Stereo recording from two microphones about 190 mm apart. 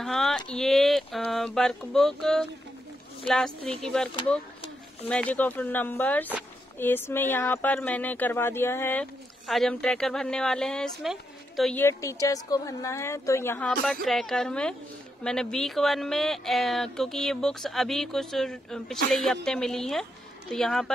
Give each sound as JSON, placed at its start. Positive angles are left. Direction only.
{"t": 0.0, "sound": "a sound", "side_deg": 0}
{"t": 0.5, "sound": "speech", "side_deg": 0}
{"t": 11.8, "sound": "speech", "side_deg": 15}